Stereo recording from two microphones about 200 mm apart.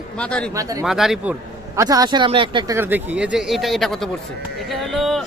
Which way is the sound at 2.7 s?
10° right (ahead or behind).